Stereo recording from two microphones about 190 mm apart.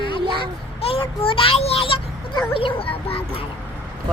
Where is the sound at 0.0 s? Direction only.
25° left (ahead or behind).